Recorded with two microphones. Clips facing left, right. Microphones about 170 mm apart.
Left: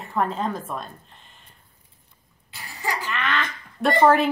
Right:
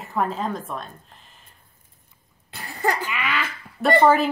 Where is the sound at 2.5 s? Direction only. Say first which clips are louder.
Right 5 dB; 55° right (ahead or behind).